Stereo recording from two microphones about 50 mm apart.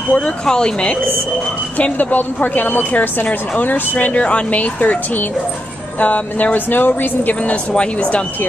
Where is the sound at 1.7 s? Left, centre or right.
Left.